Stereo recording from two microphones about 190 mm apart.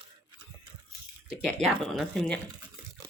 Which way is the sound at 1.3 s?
Centre (ahead or behind).